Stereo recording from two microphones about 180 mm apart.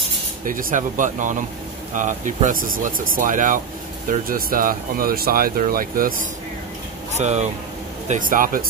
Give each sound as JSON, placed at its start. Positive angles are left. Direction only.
{"t": 0.5, "sound": "speech", "side_deg": -50}
{"t": 7.2, "sound": "speech", "side_deg": -40}
{"t": 8.1, "sound": "speech", "side_deg": -50}